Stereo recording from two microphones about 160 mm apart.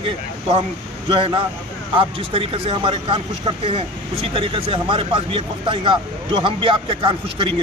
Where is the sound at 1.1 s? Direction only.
30° right (ahead or behind).